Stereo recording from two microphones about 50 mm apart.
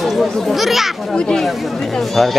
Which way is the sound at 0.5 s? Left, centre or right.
Centre.